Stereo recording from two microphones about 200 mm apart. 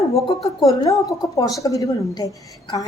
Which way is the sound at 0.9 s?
15° left (ahead or behind).